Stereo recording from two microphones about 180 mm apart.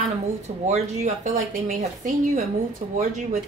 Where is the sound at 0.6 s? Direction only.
40° right (ahead or behind).